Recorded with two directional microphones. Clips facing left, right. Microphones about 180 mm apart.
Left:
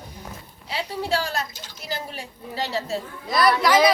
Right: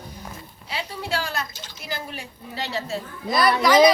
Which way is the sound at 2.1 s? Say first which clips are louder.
Left 1 dB; 40° left (ahead or behind).